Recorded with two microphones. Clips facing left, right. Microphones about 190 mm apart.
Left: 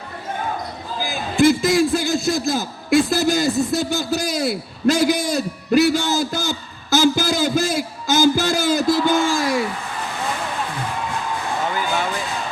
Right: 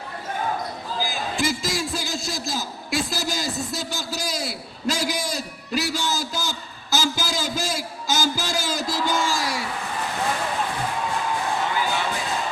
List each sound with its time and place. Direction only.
1.0 s a man's voice: 55° left (ahead or behind)